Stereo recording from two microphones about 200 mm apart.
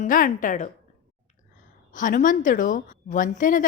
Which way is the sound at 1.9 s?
40° left (ahead or behind).